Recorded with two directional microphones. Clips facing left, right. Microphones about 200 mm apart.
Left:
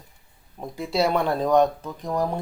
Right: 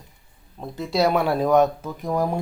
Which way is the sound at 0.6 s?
10° left (ahead or behind).